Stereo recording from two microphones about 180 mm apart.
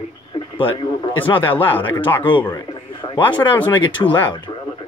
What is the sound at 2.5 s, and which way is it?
Radio, 25° left (ahead or behind).